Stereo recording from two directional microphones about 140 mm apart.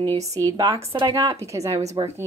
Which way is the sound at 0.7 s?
40° right (ahead or behind).